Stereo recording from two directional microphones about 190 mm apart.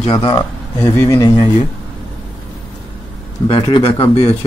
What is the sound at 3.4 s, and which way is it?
Speech, 25° left (ahead or behind).